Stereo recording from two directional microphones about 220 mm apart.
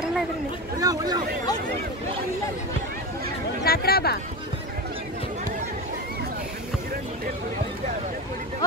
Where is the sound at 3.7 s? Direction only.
45° left (ahead or behind).